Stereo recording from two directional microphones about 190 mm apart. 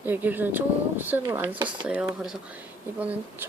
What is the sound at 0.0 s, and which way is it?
Speech, 10° right (ahead or behind).